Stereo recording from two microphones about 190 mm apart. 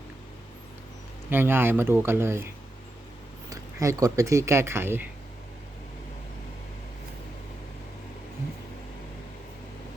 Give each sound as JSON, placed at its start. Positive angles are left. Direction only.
{"t": 1.3, "sound": "speech", "side_deg": -10}
{"t": 3.5, "sound": "speech", "side_deg": -15}